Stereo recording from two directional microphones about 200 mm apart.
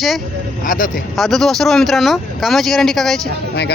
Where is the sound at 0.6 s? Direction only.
40° left (ahead or behind).